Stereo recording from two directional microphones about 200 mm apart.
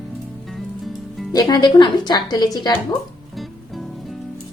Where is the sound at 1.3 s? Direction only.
20° left (ahead or behind).